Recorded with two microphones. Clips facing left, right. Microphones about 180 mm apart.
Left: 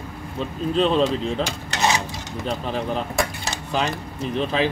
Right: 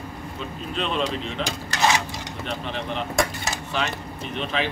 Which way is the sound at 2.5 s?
40° left (ahead or behind).